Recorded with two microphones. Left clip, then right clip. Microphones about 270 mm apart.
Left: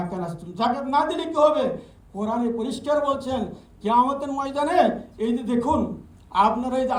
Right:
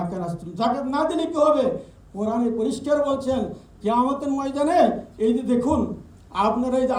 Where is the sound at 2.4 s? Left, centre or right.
Centre.